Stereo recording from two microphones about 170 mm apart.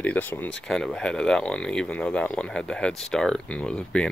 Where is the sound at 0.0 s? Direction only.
10° left (ahead or behind).